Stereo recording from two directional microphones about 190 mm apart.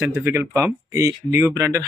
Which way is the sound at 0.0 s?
10° right (ahead or behind).